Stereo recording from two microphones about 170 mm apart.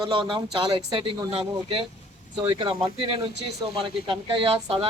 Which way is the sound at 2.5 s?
30° right (ahead or behind).